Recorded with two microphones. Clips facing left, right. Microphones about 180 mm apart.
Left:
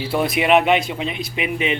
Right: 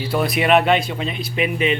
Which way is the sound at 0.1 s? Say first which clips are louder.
Even; 20° left (ahead or behind).